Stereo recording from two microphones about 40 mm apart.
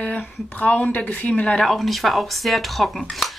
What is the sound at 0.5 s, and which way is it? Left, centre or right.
Speech, left.